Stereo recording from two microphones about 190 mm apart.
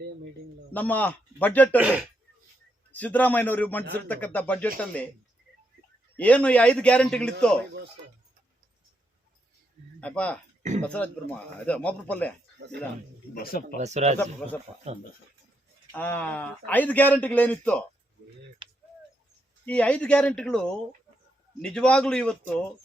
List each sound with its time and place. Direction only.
0.7 s a man's voice: 10° left (ahead or behind)
1.8 s speech: 5° right (ahead or behind)
2.9 s a man's voice: 10° left (ahead or behind)
6.1 s a man's voice: 5° left (ahead or behind)
10.0 s a man's voice: 5° left (ahead or behind)
10.6 s speech: 35° right (ahead or behind)
10.8 s a man's voice: 5° left (ahead or behind)
13.3 s speech: 50° left (ahead or behind)
13.7 s speech: 35° right (ahead or behind)
15.9 s a man's voice: 10° left (ahead or behind)
19.6 s speech: 5° left (ahead or behind)